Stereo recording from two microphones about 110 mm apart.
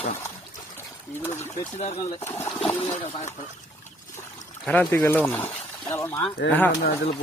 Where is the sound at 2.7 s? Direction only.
75° left (ahead or behind).